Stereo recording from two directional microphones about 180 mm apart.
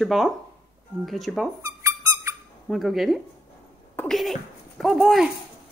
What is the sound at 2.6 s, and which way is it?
Speech, centre (ahead or behind).